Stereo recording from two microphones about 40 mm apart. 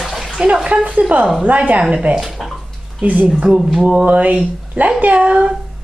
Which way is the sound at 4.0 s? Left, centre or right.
Right.